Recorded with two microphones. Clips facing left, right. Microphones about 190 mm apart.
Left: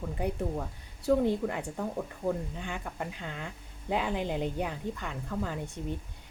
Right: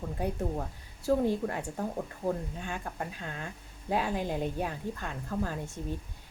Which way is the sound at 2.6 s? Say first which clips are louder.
Even; 15° left (ahead or behind).